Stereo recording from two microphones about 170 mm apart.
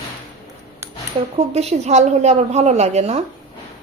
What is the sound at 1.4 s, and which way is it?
A woman's voice, 40° right (ahead or behind).